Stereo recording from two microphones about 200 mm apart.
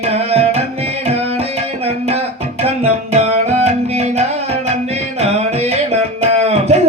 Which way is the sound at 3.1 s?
35° right (ahead or behind).